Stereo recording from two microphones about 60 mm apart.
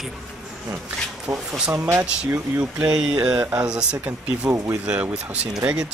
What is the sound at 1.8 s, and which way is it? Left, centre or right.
Speech, right.